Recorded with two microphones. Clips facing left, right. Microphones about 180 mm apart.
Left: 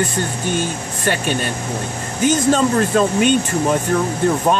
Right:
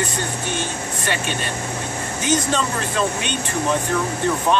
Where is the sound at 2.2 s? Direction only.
45° left (ahead or behind).